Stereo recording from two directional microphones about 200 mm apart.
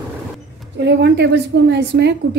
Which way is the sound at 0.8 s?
60° right (ahead or behind).